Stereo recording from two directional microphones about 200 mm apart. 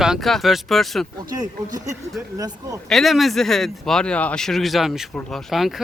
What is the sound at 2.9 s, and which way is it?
Speech, centre (ahead or behind).